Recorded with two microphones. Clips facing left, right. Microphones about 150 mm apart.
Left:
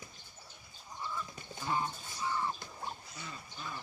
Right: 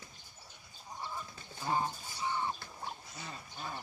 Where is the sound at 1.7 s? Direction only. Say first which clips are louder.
Right 1 dB; 35° right (ahead or behind).